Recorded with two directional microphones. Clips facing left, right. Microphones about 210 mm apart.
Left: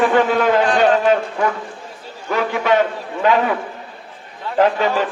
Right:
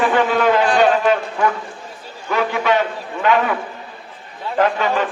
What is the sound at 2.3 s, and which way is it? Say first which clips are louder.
Speech: left 1 dB; 45° left (ahead or behind).